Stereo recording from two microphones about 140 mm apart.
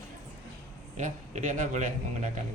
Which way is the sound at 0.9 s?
60° right (ahead or behind).